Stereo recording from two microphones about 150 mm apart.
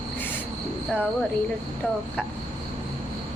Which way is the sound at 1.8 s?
10° left (ahead or behind).